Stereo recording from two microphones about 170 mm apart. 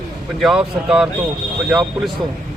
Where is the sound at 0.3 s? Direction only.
Centre (ahead or behind).